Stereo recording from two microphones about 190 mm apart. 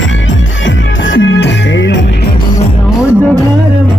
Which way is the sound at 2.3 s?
25° left (ahead or behind).